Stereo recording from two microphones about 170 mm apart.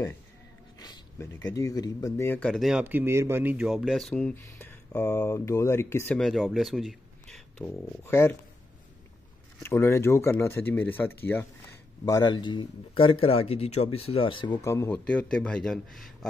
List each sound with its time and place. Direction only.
0.7 s speech: 25° left (ahead or behind)
2.5 s speech: centre (ahead or behind); by 6.1 s 15° left (ahead or behind)
6.1 s speech: centre (ahead or behind)
8.0 s speech: 15° left (ahead or behind)
9.6 s speech: 15° left (ahead or behind)